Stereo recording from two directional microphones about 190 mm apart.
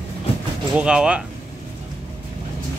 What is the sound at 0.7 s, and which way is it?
Speech, 5° right (ahead or behind).